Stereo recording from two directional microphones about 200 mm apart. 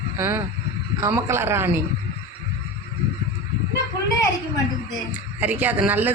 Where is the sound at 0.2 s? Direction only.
10° right (ahead or behind).